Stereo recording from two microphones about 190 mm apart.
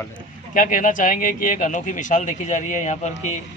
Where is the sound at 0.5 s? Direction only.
45° left (ahead or behind).